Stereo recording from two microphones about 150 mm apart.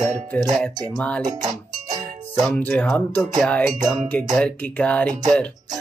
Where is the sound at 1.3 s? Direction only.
25° right (ahead or behind).